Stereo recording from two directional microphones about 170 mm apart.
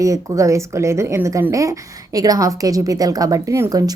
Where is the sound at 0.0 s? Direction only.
20° right (ahead or behind).